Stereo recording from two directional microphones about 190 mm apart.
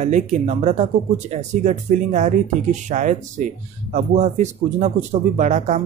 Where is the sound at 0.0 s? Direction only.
40° right (ahead or behind).